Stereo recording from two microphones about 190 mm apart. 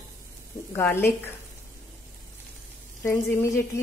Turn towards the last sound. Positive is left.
turn(degrees=15)  # may be behind; listen again after turning